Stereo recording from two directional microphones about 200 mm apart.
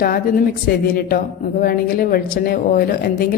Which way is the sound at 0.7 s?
50° left (ahead or behind).